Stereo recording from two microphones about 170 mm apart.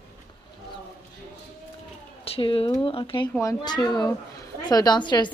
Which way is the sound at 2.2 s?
35° left (ahead or behind).